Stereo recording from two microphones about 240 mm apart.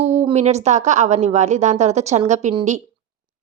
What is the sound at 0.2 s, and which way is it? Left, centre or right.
A woman's voice, right.